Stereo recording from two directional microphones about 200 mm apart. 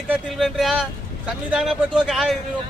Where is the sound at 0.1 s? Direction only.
Centre (ahead or behind).